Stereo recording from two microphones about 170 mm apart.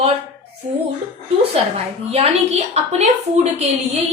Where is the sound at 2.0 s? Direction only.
40° right (ahead or behind).